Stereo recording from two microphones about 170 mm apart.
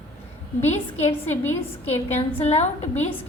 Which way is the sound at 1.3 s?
10° left (ahead or behind).